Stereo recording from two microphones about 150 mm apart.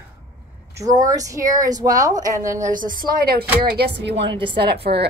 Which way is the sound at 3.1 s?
90° right.